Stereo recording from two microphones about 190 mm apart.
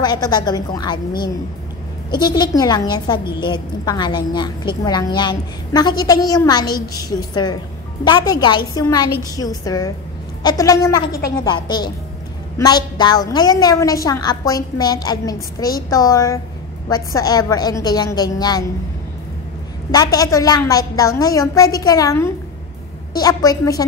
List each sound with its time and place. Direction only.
0.0 s a woman's voice: 20° left (ahead or behind)
2.0 s a woman's voice: 20° left (ahead or behind)
19.9 s a woman's voice: 20° left (ahead or behind)